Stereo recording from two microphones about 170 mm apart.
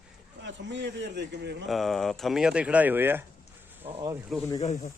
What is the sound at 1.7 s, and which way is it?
Speech, centre (ahead or behind).